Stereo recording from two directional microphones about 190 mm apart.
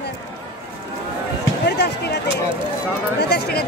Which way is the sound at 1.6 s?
60° left (ahead or behind).